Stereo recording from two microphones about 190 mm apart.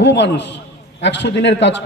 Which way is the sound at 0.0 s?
65° left (ahead or behind).